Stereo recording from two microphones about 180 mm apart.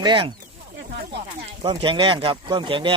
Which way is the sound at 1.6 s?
30° right (ahead or behind).